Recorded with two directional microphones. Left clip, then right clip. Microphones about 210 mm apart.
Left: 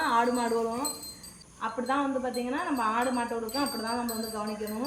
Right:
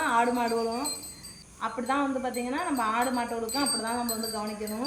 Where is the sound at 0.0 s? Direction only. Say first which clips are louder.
Right 1 dB; 5° right (ahead or behind).